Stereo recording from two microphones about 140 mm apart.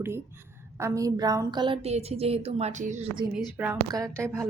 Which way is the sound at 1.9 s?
50° right (ahead or behind).